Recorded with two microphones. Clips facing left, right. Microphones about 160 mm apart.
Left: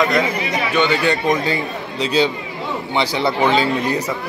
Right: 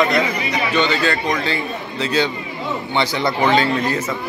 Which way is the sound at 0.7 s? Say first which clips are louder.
Left 2 dB; 15° left (ahead or behind).